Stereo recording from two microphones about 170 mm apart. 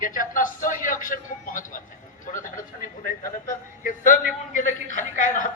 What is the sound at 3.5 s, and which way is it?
A man's voice, 50° left (ahead or behind).